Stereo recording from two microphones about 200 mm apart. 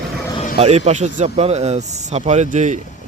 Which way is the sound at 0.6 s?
30° right (ahead or behind).